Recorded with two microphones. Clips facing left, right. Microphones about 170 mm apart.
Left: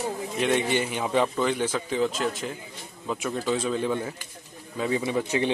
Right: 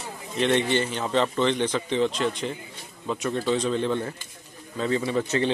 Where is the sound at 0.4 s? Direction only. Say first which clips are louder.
Right 2 dB; 10° left (ahead or behind).